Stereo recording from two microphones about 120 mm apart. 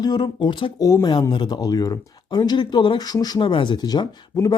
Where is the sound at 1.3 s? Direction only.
40° left (ahead or behind).